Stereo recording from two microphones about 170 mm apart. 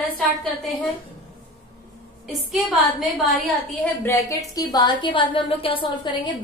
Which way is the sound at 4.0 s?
15° left (ahead or behind).